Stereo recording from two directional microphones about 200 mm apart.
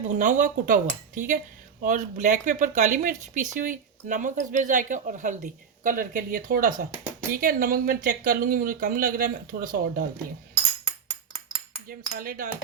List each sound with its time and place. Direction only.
0.2 s speech: 40° right (ahead or behind)
11.9 s speech: 45° right (ahead or behind)